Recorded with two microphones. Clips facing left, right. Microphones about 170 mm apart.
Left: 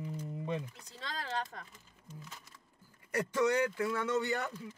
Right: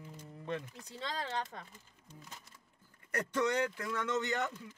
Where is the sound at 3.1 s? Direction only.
10° left (ahead or behind).